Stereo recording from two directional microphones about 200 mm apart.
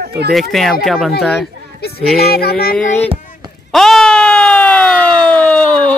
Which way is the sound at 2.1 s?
50° left (ahead or behind).